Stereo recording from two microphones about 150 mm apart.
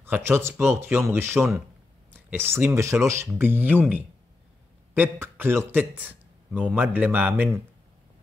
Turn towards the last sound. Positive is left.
turn(degrees=-10)  # may be behind; listen again after turning